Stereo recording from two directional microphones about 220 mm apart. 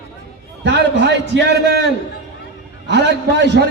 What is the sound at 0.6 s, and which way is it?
A man's voice, 50° right (ahead or behind).